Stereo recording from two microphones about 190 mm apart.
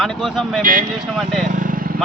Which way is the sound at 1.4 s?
45° right (ahead or behind).